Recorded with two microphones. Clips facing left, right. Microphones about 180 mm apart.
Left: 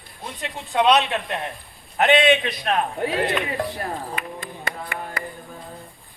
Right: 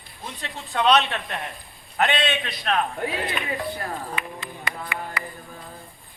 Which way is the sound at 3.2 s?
80° left.